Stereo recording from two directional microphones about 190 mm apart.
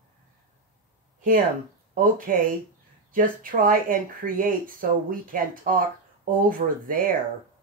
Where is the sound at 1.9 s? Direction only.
45° right (ahead or behind).